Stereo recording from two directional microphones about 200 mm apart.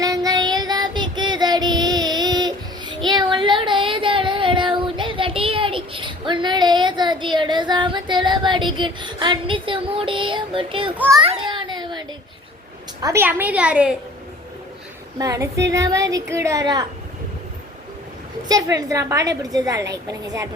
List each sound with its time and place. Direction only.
0.0 s child singing: 20° right (ahead or behind)
10.9 s a woman's voice: 10° right (ahead or behind)
11.2 s a sound: 25° right (ahead or behind)
13.0 s a woman's voice: 15° right (ahead or behind)
15.2 s a woman's voice: 15° right (ahead or behind)
18.4 s a woman's voice: 20° right (ahead or behind)